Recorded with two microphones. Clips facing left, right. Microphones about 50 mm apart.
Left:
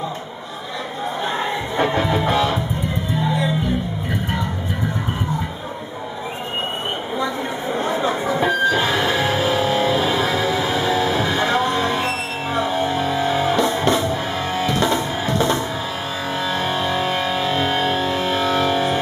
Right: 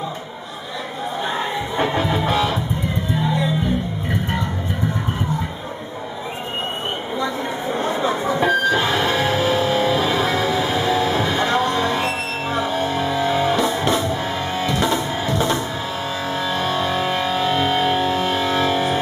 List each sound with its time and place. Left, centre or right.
1.8 s music: centre
7.2 s a sound: centre
8.7 s music: centre